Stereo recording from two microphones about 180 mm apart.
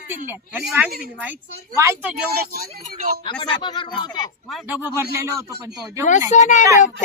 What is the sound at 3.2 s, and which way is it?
Speech, 25° left (ahead or behind).